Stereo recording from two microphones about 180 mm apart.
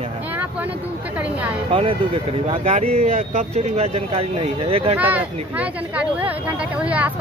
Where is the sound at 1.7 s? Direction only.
30° right (ahead or behind).